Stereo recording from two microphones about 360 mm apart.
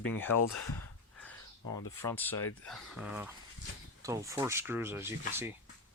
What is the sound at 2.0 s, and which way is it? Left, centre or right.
Speech, centre.